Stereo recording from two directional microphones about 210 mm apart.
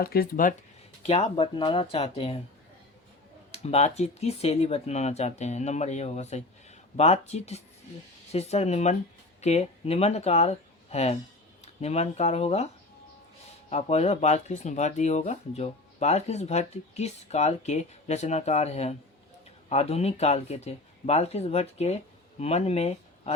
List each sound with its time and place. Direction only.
0.0 s speech: 45° left (ahead or behind)
1.0 s speech: 30° left (ahead or behind)
3.5 s speech: 30° left (ahead or behind)